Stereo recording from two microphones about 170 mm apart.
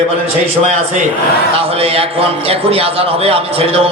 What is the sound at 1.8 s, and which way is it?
A man's voice, 35° right (ahead or behind).